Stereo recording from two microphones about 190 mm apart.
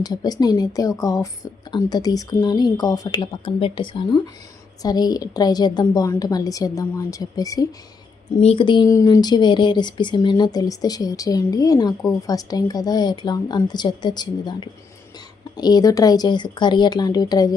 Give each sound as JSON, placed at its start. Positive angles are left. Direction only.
{"t": 0.0, "sound": "speech", "side_deg": 20}
{"t": 8.4, "sound": "speech", "side_deg": 30}